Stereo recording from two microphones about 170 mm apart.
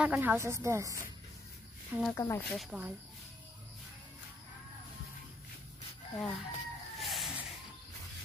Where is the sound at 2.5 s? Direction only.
Centre (ahead or behind).